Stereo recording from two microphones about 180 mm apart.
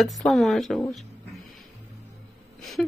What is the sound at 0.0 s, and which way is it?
Speech, centre (ahead or behind).